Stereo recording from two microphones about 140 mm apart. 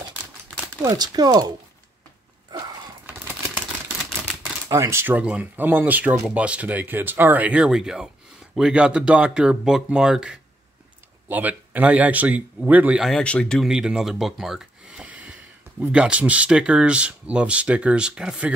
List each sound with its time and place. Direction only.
0.8 s speech: 30° right (ahead or behind)
3.2 s a sound: 10° right (ahead or behind)
4.6 s speech: 20° right (ahead or behind)
13.0 s speech: 5° left (ahead or behind)
13.7 s speech: 5° right (ahead or behind)